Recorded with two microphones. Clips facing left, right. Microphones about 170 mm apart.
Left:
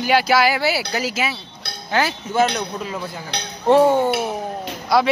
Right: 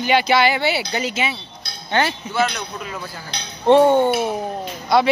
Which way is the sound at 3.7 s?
Centre (ahead or behind).